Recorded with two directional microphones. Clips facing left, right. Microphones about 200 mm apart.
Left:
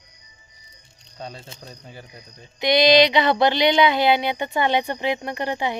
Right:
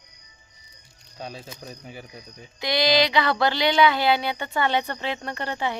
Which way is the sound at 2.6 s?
20° left (ahead or behind).